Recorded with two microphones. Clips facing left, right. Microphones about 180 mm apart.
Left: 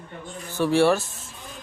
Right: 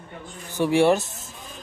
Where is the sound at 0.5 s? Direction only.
15° right (ahead or behind).